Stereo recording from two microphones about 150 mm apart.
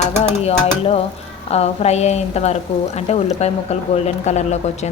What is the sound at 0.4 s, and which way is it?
A woman's voice, 40° left (ahead or behind).